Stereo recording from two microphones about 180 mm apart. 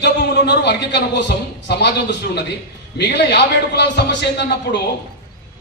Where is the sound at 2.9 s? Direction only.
65° left (ahead or behind).